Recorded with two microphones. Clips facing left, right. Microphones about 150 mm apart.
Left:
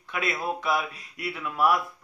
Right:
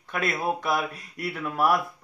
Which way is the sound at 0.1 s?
50° right (ahead or behind).